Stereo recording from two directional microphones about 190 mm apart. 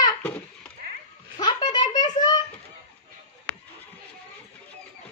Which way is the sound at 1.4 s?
25° left (ahead or behind).